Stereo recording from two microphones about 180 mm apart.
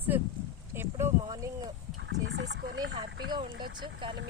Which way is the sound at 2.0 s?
80° right.